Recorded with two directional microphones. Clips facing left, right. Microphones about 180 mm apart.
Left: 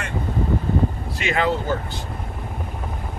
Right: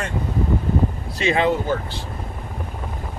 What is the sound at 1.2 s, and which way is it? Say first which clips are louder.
Speech: right 3 dB; 25° right (ahead or behind).